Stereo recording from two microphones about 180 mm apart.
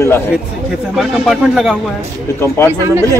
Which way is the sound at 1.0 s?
Centre (ahead or behind).